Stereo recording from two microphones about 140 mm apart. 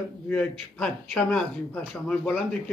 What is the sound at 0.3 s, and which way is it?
Speech, 5° left (ahead or behind).